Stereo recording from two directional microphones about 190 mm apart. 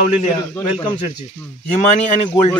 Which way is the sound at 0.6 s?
25° left (ahead or behind).